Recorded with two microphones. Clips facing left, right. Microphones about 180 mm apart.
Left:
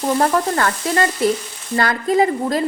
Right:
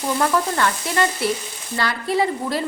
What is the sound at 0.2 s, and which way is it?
Speech, 45° left (ahead or behind).